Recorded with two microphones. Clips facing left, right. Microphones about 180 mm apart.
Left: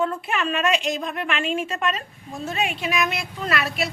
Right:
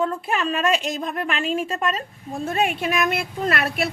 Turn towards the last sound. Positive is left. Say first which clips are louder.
# right 2 dB
turn(degrees=-55)  # may be behind; listen again after turning